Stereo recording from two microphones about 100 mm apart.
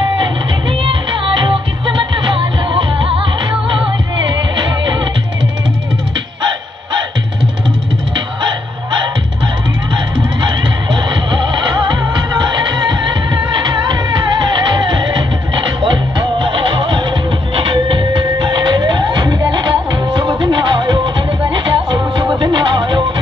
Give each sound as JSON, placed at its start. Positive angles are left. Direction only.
{"t": 0.2, "sound": "music", "side_deg": -60}
{"t": 11.7, "sound": "music", "side_deg": -45}
{"t": 13.7, "sound": "music", "side_deg": -50}